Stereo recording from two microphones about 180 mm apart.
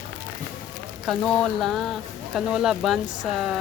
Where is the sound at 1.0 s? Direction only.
5° left (ahead or behind).